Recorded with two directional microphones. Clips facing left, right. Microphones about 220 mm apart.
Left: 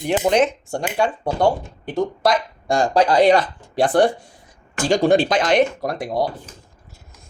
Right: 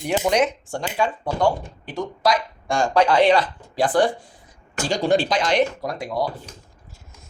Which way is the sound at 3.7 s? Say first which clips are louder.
Left 3 dB; 65° left (ahead or behind).